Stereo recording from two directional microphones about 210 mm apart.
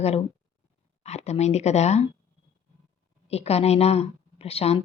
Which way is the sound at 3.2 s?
30° left (ahead or behind).